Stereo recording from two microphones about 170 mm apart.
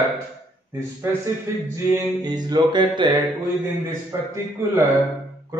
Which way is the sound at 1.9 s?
25° right (ahead or behind).